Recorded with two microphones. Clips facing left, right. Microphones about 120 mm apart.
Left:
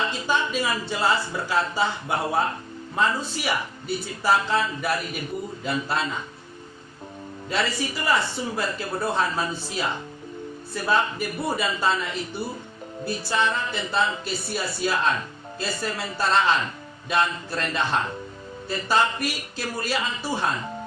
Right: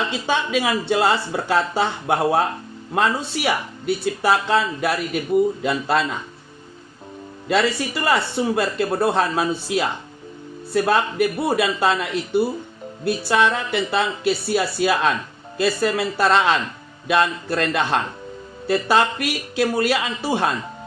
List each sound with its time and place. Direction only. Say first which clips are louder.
0.1 s speech: right 4 dB; 75° right (ahead or behind)
7.4 s speech: right 7 dB; 80° right